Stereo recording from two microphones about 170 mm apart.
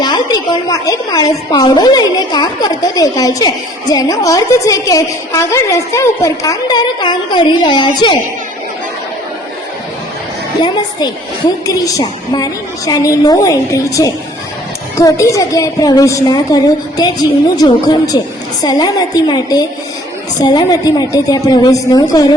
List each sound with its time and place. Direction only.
0.0 s a woman's voice: 25° left (ahead or behind)
10.6 s a woman's voice: 25° left (ahead or behind)